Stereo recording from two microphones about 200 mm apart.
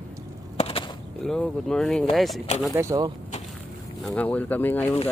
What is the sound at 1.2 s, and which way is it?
Speech, centre (ahead or behind).